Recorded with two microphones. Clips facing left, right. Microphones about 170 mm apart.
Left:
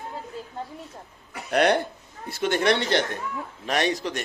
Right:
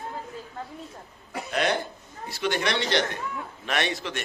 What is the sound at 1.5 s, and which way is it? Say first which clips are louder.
A man's voice: left 6 dB; 60° left (ahead or behind).